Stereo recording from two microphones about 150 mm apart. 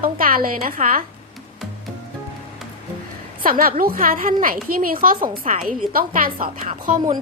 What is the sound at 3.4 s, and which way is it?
A woman's voice, 70° right (ahead or behind).